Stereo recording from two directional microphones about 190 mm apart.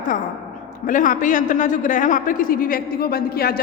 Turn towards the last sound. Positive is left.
turn(degrees=50)  # may be behind; listen again after turning